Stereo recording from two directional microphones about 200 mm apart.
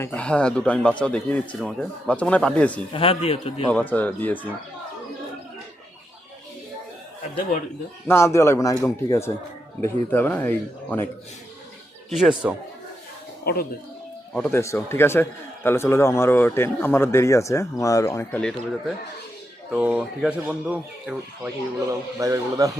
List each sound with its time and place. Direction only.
0.0 s speech: 5° left (ahead or behind)
2.9 s speech: 30° left (ahead or behind)
3.7 s a man's voice: 5° left (ahead or behind)
8.0 s a man's voice: 15° left (ahead or behind)
12.4 s speech: centre (ahead or behind)
13.4 s speech: 50° left (ahead or behind)
14.3 s a man's voice: 10° left (ahead or behind)
21.8 s a man's voice: 15° right (ahead or behind)